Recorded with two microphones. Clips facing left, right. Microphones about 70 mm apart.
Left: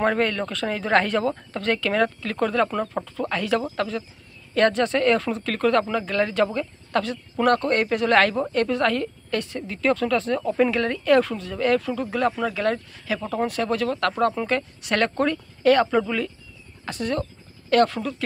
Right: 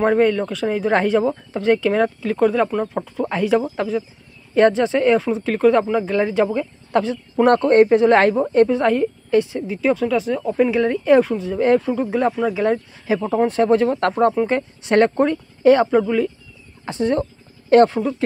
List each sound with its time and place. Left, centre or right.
0.0 s speech: centre
16.8 s speech: right